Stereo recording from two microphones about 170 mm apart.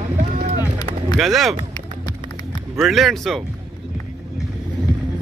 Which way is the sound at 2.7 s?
Centre (ahead or behind).